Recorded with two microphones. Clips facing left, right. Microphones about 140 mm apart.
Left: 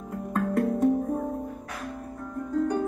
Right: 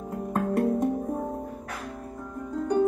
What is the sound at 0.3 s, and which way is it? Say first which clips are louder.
Music: right 1 dB; 20° right (ahead or behind).